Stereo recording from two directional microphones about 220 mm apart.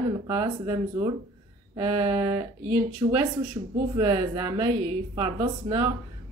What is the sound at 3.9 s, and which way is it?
Speech, 15° right (ahead or behind).